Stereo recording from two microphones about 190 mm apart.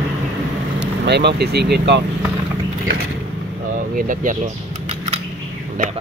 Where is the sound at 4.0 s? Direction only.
45° right (ahead or behind).